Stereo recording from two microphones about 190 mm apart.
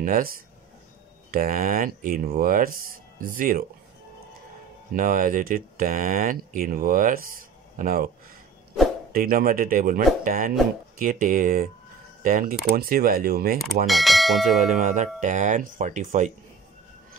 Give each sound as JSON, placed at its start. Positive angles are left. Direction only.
{"t": 0.0, "sound": "speech", "side_deg": -45}
{"t": 4.9, "sound": "speech", "side_deg": -45}
{"t": 9.1, "sound": "speech", "side_deg": -50}
{"t": 13.8, "sound": "speech", "side_deg": 0}
{"t": 14.6, "sound": "speech", "side_deg": -40}